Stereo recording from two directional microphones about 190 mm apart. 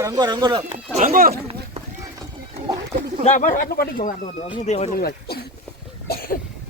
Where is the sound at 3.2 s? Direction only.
40° left (ahead or behind).